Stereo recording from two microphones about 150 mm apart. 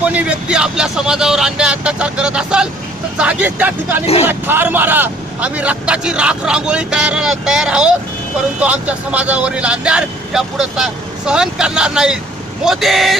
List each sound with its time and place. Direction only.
0.0 s speech: 10° right (ahead or behind)
4.0 s speech: 40° left (ahead or behind)
4.3 s speech: 15° right (ahead or behind)